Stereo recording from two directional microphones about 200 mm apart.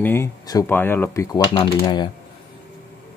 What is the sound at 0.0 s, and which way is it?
Speech, 10° left (ahead or behind).